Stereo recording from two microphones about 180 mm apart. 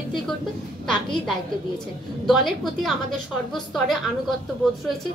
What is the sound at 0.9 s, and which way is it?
A woman's voice, 5° left (ahead or behind).